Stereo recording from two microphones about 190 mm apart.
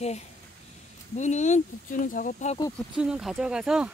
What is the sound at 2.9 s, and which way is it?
Speech, 5° right (ahead or behind).